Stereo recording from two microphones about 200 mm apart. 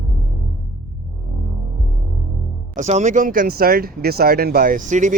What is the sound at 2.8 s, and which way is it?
Speech, 35° right (ahead or behind).